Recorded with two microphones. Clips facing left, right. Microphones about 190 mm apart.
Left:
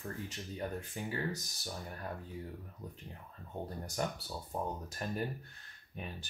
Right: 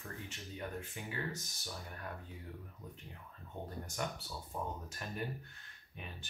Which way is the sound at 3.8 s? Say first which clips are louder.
Left 5 dB; 35° left (ahead or behind).